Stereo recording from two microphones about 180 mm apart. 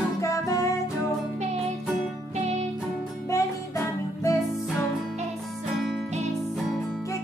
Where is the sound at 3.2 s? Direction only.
15° left (ahead or behind).